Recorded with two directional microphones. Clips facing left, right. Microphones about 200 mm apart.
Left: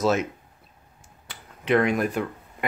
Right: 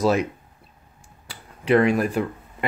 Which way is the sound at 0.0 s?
35° right (ahead or behind).